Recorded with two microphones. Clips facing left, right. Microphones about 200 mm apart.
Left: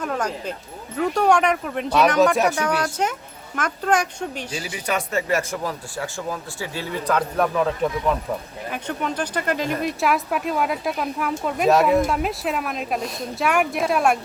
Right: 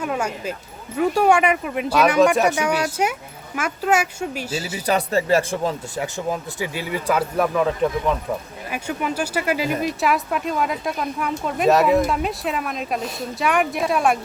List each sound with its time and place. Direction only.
0.0 s speech: 10° right (ahead or behind)
4.5 s speech: 25° right (ahead or behind)
6.0 s speech: 20° right (ahead or behind); by 14.2 s centre (ahead or behind)